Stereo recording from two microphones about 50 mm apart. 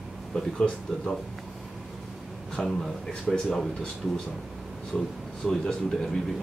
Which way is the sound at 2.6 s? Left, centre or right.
Centre.